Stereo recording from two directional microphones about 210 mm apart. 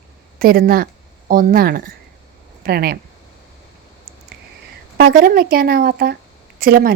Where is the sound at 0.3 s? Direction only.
45° right (ahead or behind).